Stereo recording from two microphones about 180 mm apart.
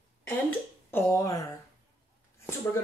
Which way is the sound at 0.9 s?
15° left (ahead or behind).